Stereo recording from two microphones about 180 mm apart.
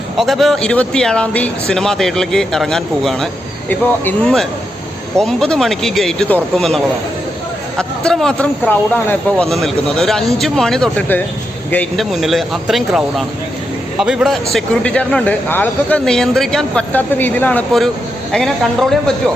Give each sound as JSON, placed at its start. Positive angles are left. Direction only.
{"t": 0.2, "sound": "speech", "side_deg": 0}